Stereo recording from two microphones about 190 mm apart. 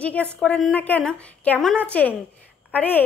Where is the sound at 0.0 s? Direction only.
5° left (ahead or behind).